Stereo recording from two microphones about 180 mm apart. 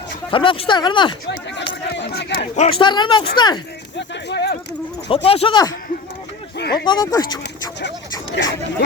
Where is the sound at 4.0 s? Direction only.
75° left (ahead or behind).